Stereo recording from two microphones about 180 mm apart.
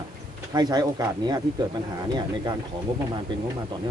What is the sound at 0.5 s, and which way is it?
Speech, 20° right (ahead or behind).